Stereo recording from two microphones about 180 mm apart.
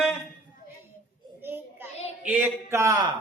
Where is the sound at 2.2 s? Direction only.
10° right (ahead or behind).